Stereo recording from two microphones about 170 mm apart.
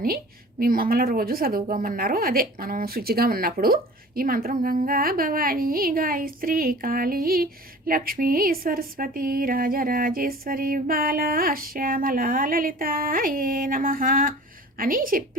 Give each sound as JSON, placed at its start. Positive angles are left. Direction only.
{"t": 0.6, "sound": "a woman's voice", "side_deg": -60}